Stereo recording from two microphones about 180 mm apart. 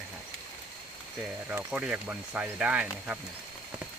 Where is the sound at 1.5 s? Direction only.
5° right (ahead or behind).